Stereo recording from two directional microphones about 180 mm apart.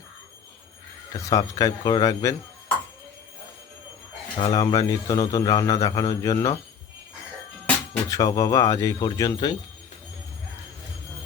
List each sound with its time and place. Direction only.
1.1 s a man's voice: 20° left (ahead or behind)
4.4 s a man's voice: 20° left (ahead or behind)
8.1 s a man's voice: 20° left (ahead or behind)